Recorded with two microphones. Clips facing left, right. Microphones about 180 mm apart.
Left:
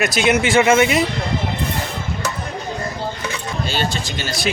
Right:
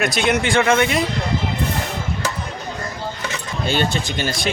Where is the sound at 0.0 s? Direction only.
5° left (ahead or behind).